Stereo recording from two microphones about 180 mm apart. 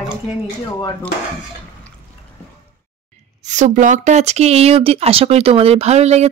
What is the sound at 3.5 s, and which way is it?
Speech, 45° right (ahead or behind).